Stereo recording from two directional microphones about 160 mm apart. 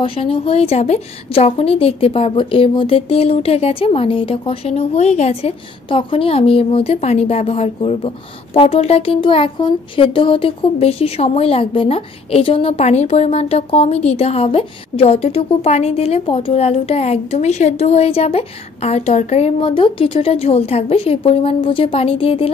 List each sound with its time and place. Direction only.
0.0 s speech: 35° left (ahead or behind)